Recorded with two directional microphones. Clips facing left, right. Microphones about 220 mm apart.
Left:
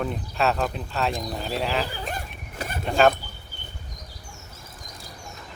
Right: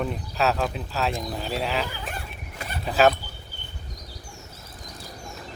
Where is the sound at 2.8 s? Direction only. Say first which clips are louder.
Even; centre (ahead or behind).